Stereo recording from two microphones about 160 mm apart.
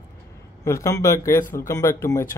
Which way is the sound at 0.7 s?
20° left (ahead or behind).